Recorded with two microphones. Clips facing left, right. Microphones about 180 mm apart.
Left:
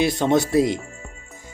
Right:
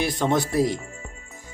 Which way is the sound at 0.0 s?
20° left (ahead or behind).